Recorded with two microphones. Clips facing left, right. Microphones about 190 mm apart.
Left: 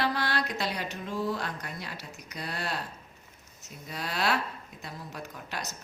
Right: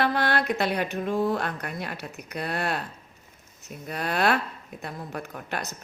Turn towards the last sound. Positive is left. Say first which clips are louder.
# right 6 dB
turn(degrees=-55)  # may be behind; listen again after turning